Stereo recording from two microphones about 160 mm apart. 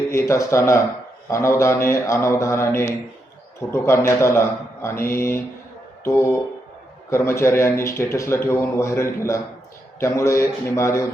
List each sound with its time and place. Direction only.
0.1 s speech: 15° left (ahead or behind)